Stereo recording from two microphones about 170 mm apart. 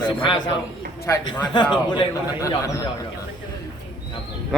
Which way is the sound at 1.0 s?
20° left (ahead or behind).